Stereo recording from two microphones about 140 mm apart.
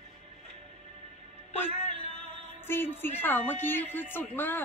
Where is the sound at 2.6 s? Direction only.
15° left (ahead or behind).